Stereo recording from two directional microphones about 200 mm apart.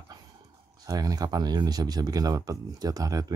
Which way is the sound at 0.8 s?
20° right (ahead or behind).